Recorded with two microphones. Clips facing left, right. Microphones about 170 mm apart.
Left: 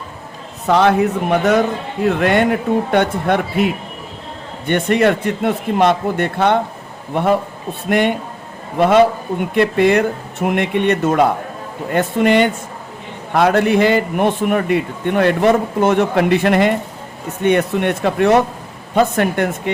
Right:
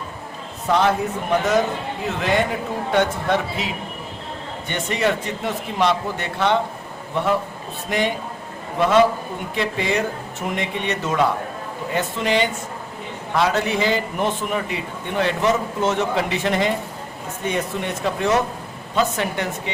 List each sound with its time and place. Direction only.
0.7 s a man's voice: 65° left (ahead or behind)